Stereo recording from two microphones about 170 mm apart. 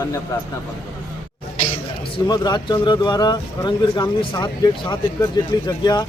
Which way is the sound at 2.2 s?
25° left (ahead or behind).